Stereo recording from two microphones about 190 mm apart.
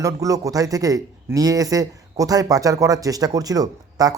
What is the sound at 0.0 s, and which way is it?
A man's voice, 20° right (ahead or behind).